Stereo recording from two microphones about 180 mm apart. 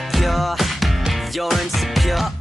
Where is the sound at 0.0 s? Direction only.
Centre (ahead or behind).